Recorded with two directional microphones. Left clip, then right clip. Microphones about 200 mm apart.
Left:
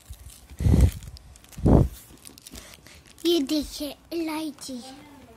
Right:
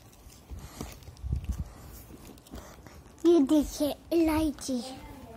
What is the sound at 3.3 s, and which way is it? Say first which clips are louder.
Speech: right 1 dB; 30° left (ahead or behind).